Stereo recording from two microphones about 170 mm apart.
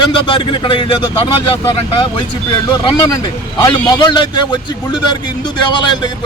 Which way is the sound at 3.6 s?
25° left (ahead or behind).